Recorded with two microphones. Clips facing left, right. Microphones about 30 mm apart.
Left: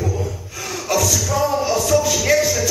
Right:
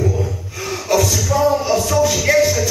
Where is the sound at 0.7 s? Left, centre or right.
Right.